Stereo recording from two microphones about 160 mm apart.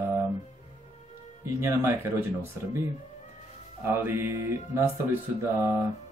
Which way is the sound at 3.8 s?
15° right (ahead or behind).